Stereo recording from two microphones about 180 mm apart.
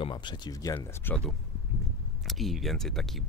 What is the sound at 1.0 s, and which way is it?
Speech, 5° left (ahead or behind).